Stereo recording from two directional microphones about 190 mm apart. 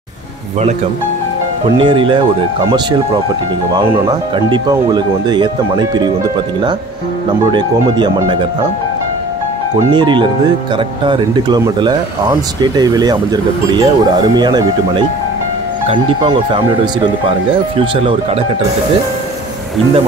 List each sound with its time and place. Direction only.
1.8 s speech: 25° right (ahead or behind)
3.7 s speech: 20° right (ahead or behind)
7.5 s speech: 25° right (ahead or behind)
9.8 s speech: 25° right (ahead or behind)